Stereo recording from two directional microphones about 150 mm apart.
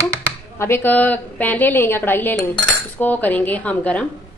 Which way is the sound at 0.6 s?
15° left (ahead or behind).